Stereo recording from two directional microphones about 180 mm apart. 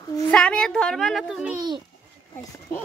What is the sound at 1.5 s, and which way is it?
Speech, 25° right (ahead or behind).